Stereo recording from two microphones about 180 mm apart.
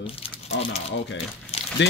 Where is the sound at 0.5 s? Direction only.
90° left.